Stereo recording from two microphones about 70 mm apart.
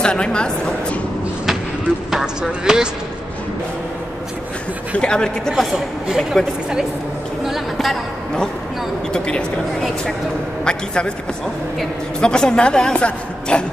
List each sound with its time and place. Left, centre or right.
0.0 s speech: centre
2.0 s a sound: centre
4.9 s a woman's voice: centre
5.5 s speech: centre
7.4 s speech: centre
10.6 s a man's voice: centre
12.2 s a woman's voice: centre